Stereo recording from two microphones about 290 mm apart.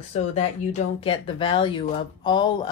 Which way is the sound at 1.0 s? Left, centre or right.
Centre.